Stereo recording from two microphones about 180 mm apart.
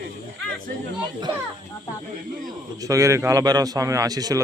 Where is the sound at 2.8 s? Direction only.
20° right (ahead or behind).